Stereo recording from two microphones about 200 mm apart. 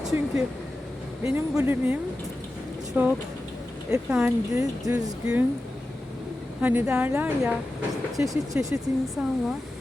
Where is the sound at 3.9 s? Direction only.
10° right (ahead or behind).